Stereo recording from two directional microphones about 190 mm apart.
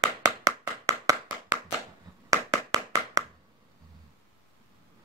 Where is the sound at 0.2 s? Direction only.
15° right (ahead or behind).